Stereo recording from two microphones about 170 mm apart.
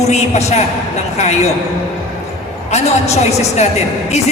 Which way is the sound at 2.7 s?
40° left (ahead or behind).